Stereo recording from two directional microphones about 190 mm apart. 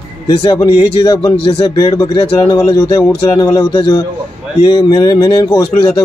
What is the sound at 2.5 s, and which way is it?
Speech, 20° left (ahead or behind).